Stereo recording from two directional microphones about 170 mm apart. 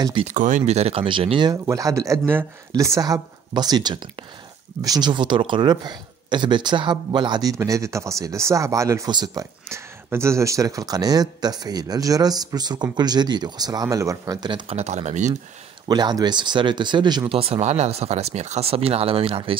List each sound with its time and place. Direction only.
0.0 s speech: 30° right (ahead or behind)
0.3 s speech: 45° right (ahead or behind); by 1.5 s 30° right (ahead or behind)
1.5 s speech: 20° right (ahead or behind)
14.8 s speech: 40° right (ahead or behind)
15.9 s speech: 25° right (ahead or behind)